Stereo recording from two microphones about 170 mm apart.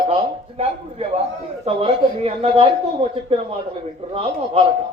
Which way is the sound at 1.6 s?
35° right (ahead or behind).